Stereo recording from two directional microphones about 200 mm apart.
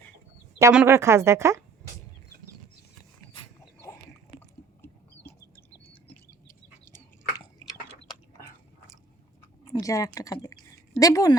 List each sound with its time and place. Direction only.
0.6 s speech: 10° right (ahead or behind)
6.9 s a sound: 20° left (ahead or behind)
9.7 s speech: 15° left (ahead or behind)